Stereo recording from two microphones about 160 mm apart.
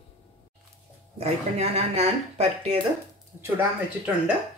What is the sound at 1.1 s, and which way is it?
Speech, 40° right (ahead or behind).